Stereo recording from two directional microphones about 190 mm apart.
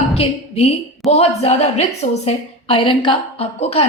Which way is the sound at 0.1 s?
30° left (ahead or behind).